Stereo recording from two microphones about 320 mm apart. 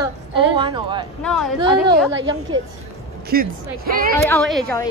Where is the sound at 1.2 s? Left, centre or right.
Centre.